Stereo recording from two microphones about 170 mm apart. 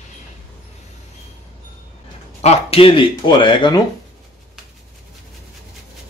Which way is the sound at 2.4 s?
35° left (ahead or behind).